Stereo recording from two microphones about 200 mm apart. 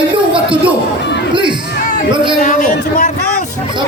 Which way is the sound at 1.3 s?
25° right (ahead or behind).